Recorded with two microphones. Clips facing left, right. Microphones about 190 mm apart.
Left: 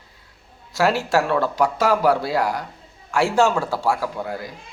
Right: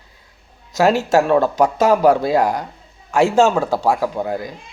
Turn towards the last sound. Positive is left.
turn(degrees=-20)  # may be behind; listen again after turning